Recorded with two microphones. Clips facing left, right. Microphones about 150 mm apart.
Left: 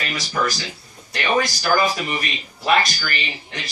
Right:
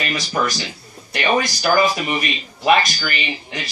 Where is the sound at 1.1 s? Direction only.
15° right (ahead or behind).